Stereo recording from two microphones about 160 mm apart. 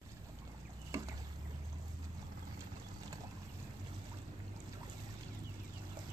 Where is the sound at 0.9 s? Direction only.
20° right (ahead or behind).